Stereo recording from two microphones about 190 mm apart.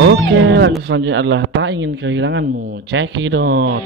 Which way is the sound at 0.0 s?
65° right (ahead or behind).